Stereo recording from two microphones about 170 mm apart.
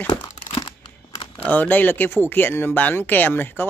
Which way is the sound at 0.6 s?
25° left (ahead or behind).